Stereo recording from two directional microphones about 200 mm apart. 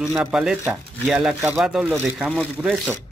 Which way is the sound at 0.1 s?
5° right (ahead or behind).